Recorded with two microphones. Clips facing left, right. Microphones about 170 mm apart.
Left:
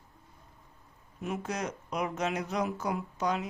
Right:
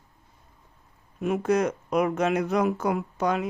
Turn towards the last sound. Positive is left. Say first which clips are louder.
# right 6 dB
turn(degrees=-55)  # may be behind; listen again after turning